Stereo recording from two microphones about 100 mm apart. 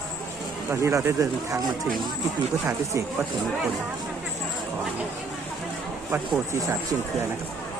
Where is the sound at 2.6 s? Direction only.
30° right (ahead or behind).